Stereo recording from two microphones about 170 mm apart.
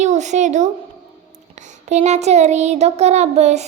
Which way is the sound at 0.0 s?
45° right (ahead or behind).